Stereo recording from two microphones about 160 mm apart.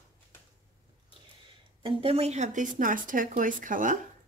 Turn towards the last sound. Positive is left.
turn(degrees=-55)  # may be behind; listen again after turning